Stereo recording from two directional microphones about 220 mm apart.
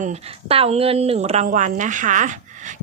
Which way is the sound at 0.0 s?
30° right (ahead or behind).